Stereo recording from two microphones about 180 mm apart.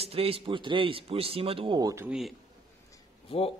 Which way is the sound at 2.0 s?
Centre (ahead or behind).